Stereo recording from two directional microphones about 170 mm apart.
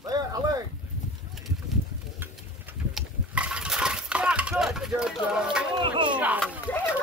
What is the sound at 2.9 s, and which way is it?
Breaking, 5° right (ahead or behind).